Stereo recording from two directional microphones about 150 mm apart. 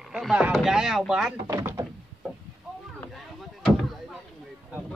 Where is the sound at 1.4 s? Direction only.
25° right (ahead or behind).